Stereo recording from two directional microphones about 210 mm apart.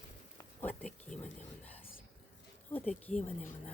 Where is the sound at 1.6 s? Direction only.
30° left (ahead or behind).